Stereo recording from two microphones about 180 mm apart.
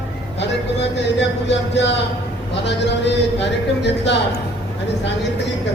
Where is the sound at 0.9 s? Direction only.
75° left (ahead or behind).